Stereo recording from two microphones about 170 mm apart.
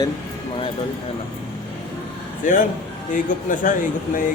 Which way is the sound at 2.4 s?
50° left (ahead or behind).